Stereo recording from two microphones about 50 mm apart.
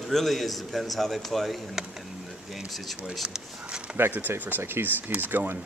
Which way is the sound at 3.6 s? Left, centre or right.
Right.